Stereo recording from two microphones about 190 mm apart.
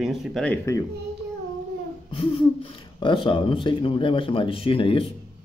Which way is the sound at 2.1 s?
30° left (ahead or behind).